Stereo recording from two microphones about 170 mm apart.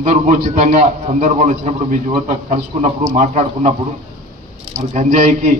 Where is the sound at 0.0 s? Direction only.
45° right (ahead or behind).